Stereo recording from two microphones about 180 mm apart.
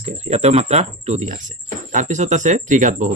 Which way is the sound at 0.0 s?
35° right (ahead or behind).